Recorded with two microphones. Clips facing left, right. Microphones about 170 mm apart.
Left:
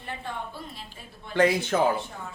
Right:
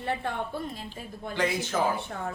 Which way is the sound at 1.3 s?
55° left (ahead or behind).